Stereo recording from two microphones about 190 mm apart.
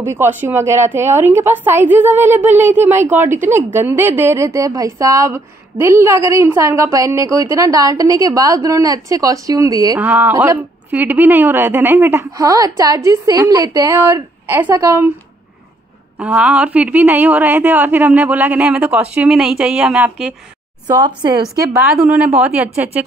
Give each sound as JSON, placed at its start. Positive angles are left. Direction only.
{"t": 0.0, "sound": "a woman's voice", "side_deg": -10}
{"t": 16.2, "sound": "a woman's voice", "side_deg": -5}
{"t": 20.8, "sound": "a woman's voice", "side_deg": -20}
{"t": 21.8, "sound": "a woman's voice", "side_deg": -5}